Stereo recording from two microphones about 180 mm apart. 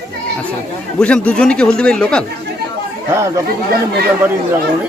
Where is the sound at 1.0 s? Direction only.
5° left (ahead or behind).